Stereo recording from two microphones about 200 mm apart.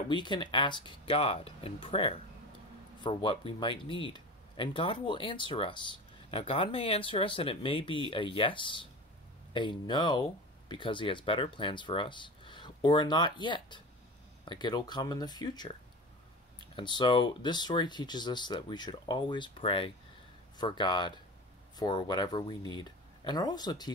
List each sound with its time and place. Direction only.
0.1 s speech: 25° left (ahead or behind)
16.7 s speech: 25° left (ahead or behind)